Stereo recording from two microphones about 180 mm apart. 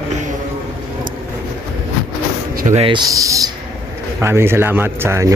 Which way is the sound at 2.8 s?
25° right (ahead or behind).